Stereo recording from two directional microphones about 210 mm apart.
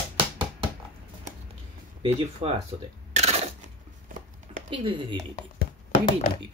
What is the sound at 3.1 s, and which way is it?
Crunch, 30° right (ahead or behind).